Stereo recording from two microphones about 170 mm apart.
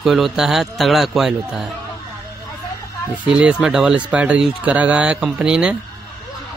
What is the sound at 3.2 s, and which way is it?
A man's voice, 5° right (ahead or behind).